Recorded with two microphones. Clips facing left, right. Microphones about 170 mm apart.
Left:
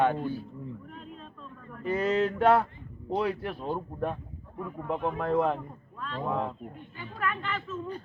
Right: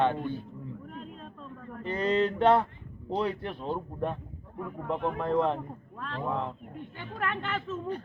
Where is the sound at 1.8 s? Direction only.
5° left (ahead or behind).